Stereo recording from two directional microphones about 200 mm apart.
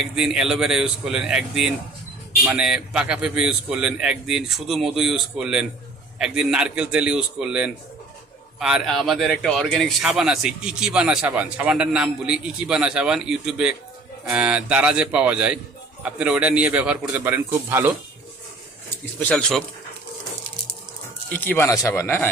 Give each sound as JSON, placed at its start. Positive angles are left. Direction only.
{"t": 0.2, "sound": "a man's voice", "side_deg": -5}
{"t": 19.2, "sound": "a man's voice", "side_deg": 5}
{"t": 21.2, "sound": "speech", "side_deg": 10}